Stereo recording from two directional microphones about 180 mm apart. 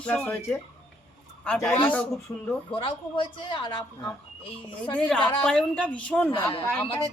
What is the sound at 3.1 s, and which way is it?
Speech, 30° left (ahead or behind).